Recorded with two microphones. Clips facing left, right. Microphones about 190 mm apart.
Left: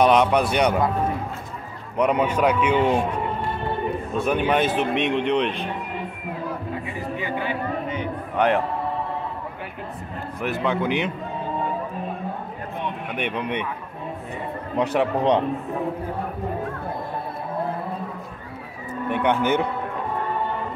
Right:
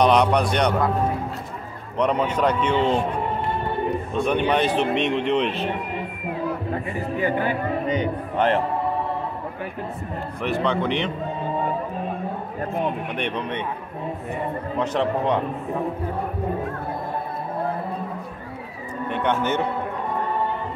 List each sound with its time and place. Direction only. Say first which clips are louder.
0.0 s a man's voice: even; 5° left (ahead or behind)
2.0 s a man's voice: left 1 dB; 10° left (ahead or behind)
4.1 s a man's voice: even; 5° left (ahead or behind)
7.2 s speech: right 6 dB; 45° right (ahead or behind)
10.4 s a man's voice: right 1 dB; 5° left (ahead or behind)
13.1 s a man's voice: even; 5° left (ahead or behind)
14.8 s a man's voice: left 2 dB; 10° left (ahead or behind)
19.0 s a man's voice: left 2 dB; 10° left (ahead or behind)